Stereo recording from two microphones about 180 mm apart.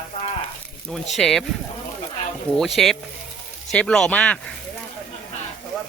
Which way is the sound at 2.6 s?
Centre (ahead or behind).